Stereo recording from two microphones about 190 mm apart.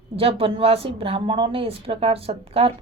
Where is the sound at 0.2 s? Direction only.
30° right (ahead or behind).